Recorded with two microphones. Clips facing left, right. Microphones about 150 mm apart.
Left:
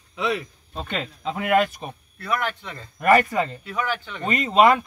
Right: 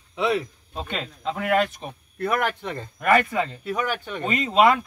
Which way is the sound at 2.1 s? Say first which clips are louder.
Right 3 dB; 50° right (ahead or behind).